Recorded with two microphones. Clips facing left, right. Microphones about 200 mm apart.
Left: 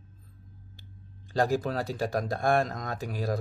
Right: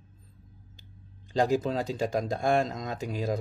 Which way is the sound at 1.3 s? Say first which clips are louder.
Right 1 dB; 20° right (ahead or behind).